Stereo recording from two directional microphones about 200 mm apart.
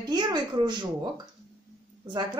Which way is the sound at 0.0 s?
20° right (ahead or behind).